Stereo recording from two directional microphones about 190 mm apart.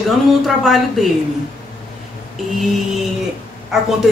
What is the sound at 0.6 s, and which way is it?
Speech, centre (ahead or behind).